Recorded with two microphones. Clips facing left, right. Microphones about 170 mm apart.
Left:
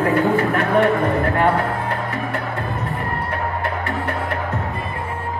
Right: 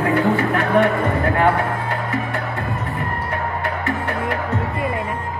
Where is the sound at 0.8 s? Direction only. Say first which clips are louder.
Left 1 dB; 30° left (ahead or behind).